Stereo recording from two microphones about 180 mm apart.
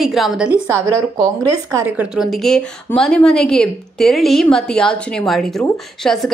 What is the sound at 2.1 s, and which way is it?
A woman's voice, centre (ahead or behind).